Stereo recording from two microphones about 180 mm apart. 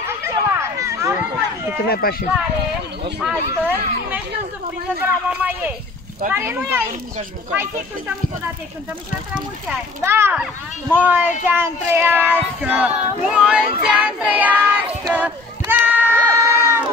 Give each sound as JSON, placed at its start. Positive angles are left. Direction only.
{"t": 0.0, "sound": "a sound", "side_deg": -15}
{"t": 1.9, "sound": "speech", "side_deg": 55}
{"t": 3.2, "sound": "speech", "side_deg": -5}
{"t": 10.0, "sound": "speech", "side_deg": -15}
{"t": 13.8, "sound": "child singing", "side_deg": -10}
{"t": 16.3, "sound": "crowd", "side_deg": -15}